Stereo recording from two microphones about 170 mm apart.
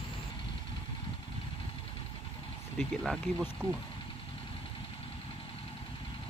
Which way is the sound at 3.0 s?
Centre (ahead or behind).